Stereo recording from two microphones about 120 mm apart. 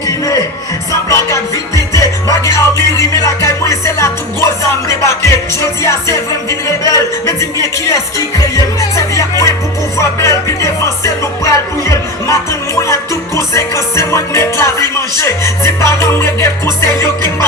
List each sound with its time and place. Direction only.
1.1 s music: 25° left (ahead or behind)
5.5 s speech: 25° left (ahead or behind)
10.0 s music: 25° left (ahead or behind)